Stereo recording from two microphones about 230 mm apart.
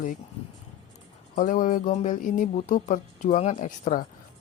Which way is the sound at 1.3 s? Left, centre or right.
Left.